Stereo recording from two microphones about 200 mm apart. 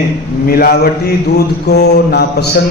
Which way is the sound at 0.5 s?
50° left (ahead or behind).